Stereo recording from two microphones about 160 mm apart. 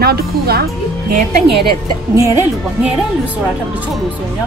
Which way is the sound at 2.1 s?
20° right (ahead or behind).